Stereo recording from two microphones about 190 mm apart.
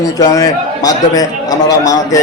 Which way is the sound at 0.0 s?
20° left (ahead or behind).